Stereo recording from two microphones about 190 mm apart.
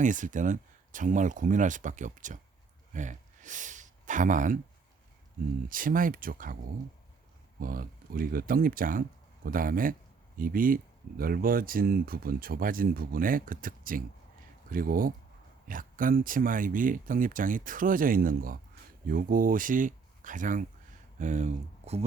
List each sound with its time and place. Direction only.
0.0 s speech: 40° right (ahead or behind)
5.6 s speech: 45° right (ahead or behind)
7.6 s speech: 50° right (ahead or behind)